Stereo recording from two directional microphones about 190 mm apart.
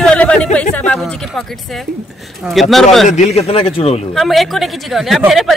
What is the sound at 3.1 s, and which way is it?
Speech, 35° left (ahead or behind).